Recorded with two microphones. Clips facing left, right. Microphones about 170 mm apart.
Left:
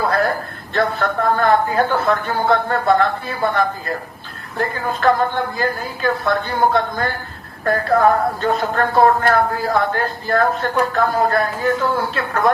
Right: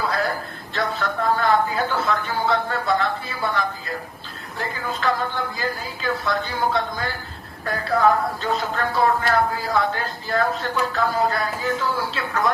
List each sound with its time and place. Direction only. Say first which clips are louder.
0.0 s a woman's voice: left 6 dB; 55° left (ahead or behind)